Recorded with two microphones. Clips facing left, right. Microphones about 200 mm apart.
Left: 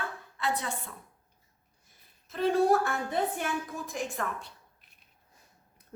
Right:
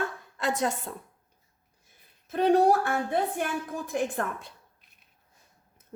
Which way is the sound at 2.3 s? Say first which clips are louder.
Right 3 dB; 55° right (ahead or behind).